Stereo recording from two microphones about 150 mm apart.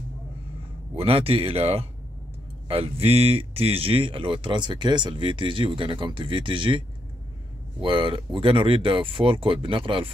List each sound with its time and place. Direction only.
0.9 s speech: 40° right (ahead or behind)
7.8 s speech: 35° right (ahead or behind)